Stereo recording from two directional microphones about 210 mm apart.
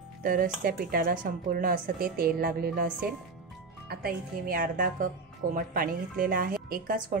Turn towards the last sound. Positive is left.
turn(degrees=-45)  # may be behind; listen again after turning